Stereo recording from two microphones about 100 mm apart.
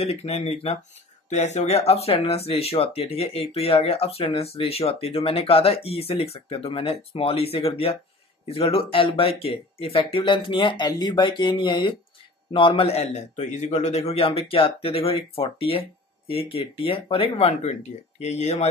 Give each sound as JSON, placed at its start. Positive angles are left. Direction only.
{"t": 0.0, "sound": "speech", "side_deg": 85}